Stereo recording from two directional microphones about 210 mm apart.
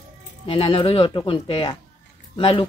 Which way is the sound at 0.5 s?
25° left (ahead or behind).